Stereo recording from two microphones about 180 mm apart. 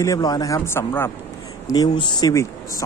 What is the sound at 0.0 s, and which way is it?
Speech, 20° left (ahead or behind).